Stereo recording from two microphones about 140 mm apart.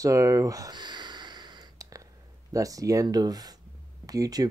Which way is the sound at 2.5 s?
25° right (ahead or behind).